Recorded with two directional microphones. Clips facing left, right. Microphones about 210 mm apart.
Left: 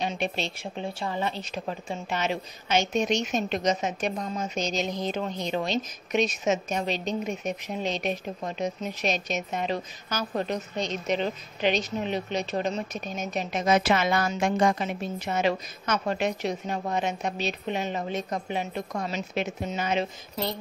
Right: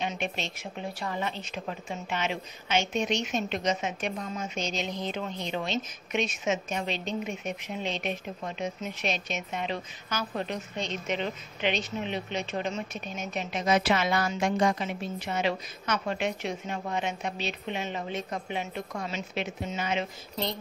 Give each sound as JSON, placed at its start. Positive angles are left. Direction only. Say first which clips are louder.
{"t": 0.0, "sound": "a woman's voice", "louder": "left 3 dB", "side_deg": 35}